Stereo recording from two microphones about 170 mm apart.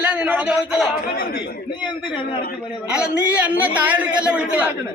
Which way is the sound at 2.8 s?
5° right (ahead or behind).